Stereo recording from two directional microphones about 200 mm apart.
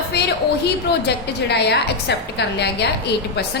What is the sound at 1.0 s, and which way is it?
A woman's voice, 55° left (ahead or behind).